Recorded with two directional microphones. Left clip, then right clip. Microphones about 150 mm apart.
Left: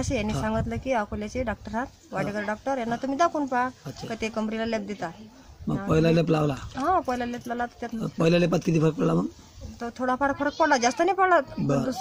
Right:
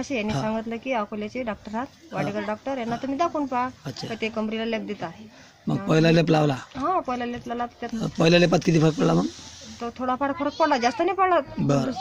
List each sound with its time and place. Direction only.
0.0 s speech: 25° left (ahead or behind)
5.9 s speech: centre (ahead or behind)
6.8 s speech: 30° left (ahead or behind)
8.0 s speech: centre (ahead or behind)
9.8 s speech: 25° left (ahead or behind)
11.6 s speech: centre (ahead or behind)